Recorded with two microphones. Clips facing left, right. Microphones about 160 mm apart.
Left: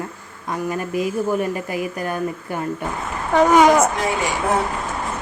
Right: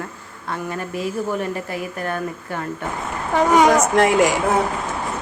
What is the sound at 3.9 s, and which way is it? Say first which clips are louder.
Speech: right 7 dB; 90° right.